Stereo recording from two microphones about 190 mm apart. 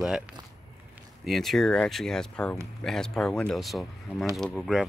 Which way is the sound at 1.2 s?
Centre (ahead or behind).